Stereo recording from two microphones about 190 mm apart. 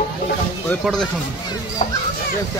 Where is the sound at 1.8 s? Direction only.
40° left (ahead or behind).